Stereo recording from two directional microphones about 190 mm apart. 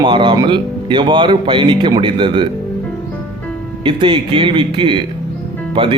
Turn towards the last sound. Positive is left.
turn(degrees=-25)  # may be behind; listen again after turning